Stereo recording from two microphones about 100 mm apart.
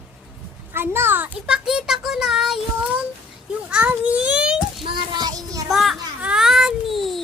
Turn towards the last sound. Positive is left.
turn(degrees=0)  # may be behind; listen again after turning